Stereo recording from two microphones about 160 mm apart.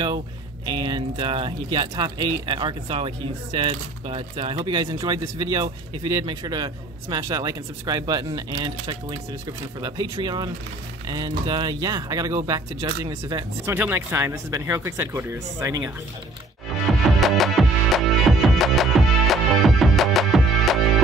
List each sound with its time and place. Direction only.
0.7 s a man's voice: 30° right (ahead or behind)
17.2 s music: centre (ahead or behind)